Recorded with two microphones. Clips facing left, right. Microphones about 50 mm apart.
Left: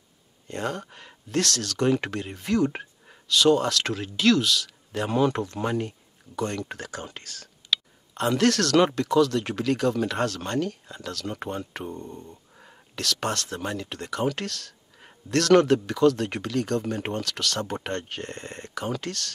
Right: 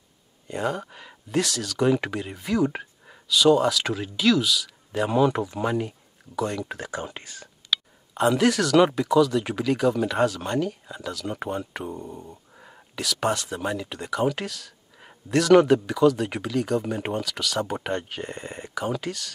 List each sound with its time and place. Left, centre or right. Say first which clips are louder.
0.5 s speech: right 3 dB; centre
6.9 s speech: right 4 dB; centre
8.1 s speech: right 2 dB; centre